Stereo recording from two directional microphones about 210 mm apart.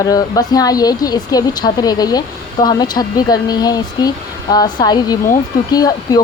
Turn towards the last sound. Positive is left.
turn(degrees=20)  # may be behind; listen again after turning